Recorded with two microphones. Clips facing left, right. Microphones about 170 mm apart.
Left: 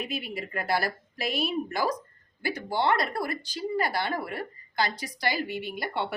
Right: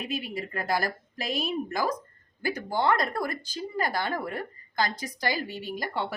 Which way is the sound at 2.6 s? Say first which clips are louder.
Even; 45° right (ahead or behind).